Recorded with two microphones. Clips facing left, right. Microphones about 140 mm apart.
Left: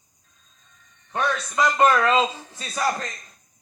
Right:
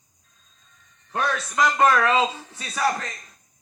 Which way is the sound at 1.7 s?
25° left (ahead or behind).